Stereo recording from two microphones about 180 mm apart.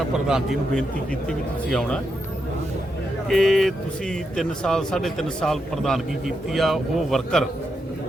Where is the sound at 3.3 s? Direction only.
Centre (ahead or behind).